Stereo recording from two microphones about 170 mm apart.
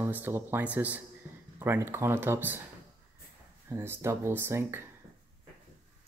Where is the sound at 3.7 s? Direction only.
15° right (ahead or behind).